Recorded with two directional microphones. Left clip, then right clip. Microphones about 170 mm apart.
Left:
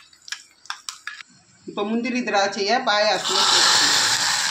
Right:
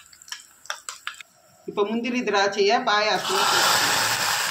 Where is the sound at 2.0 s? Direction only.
35° left (ahead or behind).